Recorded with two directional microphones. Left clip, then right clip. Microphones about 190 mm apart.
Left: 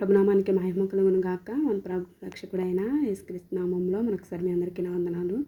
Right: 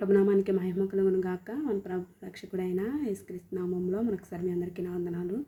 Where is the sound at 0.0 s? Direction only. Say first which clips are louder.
Left 3 dB; 15° left (ahead or behind).